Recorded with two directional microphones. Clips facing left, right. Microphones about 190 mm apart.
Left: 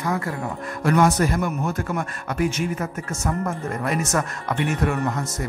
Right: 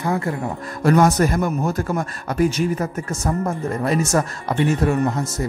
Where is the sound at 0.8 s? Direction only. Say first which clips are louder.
Right 3 dB; 40° right (ahead or behind).